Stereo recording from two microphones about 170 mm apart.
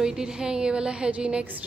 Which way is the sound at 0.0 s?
5° right (ahead or behind).